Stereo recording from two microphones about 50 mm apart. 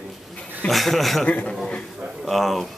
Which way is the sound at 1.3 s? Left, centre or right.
Left.